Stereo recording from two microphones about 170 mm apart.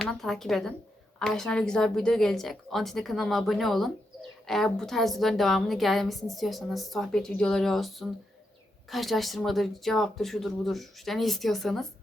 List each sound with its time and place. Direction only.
0.0 s speech: centre (ahead or behind)